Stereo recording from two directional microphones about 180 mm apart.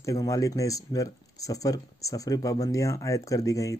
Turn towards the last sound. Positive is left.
turn(degrees=20)  # may be behind; listen again after turning